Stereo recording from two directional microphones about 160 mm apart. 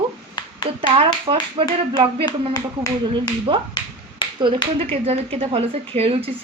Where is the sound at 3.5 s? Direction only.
35° right (ahead or behind).